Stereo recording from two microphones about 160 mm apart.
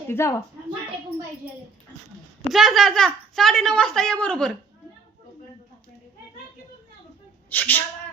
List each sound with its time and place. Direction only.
0.1 s speech: 15° left (ahead or behind)
2.5 s a woman's voice: centre (ahead or behind)
7.5 s speech: 10° left (ahead or behind)